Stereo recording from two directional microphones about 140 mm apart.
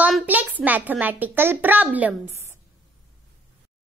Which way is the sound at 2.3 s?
20° right (ahead or behind).